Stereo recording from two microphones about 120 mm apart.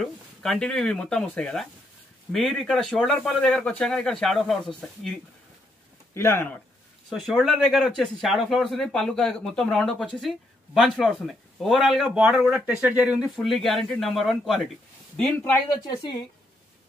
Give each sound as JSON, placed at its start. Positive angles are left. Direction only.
{"t": 0.0, "sound": "speech", "side_deg": 5}
{"t": 6.1, "sound": "speech", "side_deg": 20}
{"t": 7.1, "sound": "speech", "side_deg": 0}
{"t": 13.4, "sound": "speech", "side_deg": 0}
{"t": 15.9, "sound": "speech", "side_deg": 40}